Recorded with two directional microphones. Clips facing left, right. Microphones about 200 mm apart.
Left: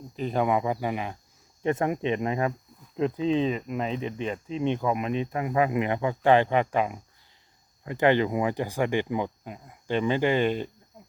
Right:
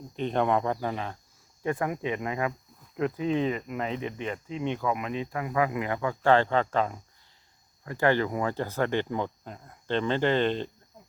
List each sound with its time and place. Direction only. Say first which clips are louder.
0.2 s speech: left 1 dB; 5° left (ahead or behind)
1.6 s speech: left 3 dB; 25° left (ahead or behind)